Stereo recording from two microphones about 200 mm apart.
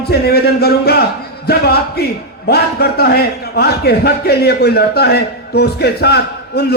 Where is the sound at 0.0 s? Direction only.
50° left (ahead or behind).